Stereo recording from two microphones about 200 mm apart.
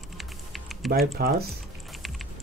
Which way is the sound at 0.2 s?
Centre (ahead or behind).